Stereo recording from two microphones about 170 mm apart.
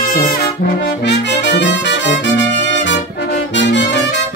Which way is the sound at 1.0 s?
90° left.